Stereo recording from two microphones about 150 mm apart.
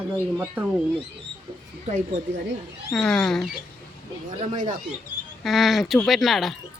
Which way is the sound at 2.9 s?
5° left (ahead or behind).